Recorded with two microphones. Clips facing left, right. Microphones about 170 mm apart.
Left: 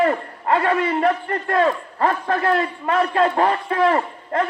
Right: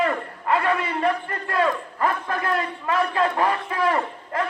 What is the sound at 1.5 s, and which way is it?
A man's voice, 30° left (ahead or behind).